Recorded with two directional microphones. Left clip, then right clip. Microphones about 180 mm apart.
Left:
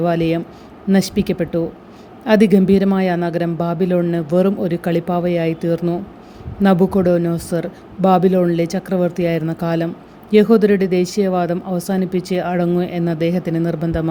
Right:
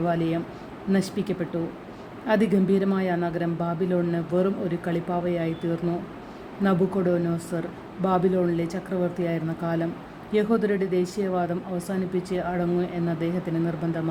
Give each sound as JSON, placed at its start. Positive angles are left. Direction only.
{"t": 0.0, "sound": "speech", "side_deg": 50}